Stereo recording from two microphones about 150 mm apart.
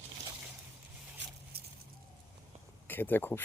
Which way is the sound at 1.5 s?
90° right.